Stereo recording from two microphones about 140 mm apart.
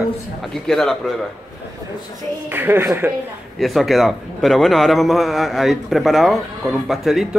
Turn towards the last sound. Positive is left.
turn(degrees=0)  # may be behind; listen again after turning